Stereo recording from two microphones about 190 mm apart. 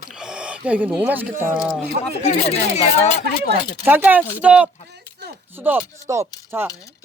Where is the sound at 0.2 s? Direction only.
5° right (ahead or behind).